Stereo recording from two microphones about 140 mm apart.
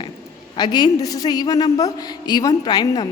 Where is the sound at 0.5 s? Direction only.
30° left (ahead or behind).